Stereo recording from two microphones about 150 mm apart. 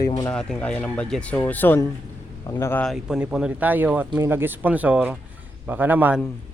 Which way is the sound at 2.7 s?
5° left (ahead or behind).